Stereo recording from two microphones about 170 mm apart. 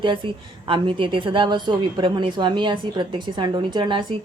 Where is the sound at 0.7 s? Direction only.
30° right (ahead or behind).